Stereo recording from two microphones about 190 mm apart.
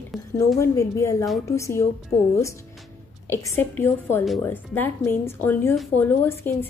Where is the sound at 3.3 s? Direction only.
15° left (ahead or behind).